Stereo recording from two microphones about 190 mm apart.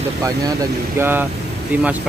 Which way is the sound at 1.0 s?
10° right (ahead or behind).